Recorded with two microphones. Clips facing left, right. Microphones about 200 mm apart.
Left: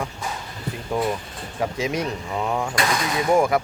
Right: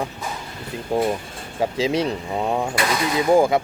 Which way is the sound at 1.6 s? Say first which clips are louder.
Right 4 dB; 30° right (ahead or behind).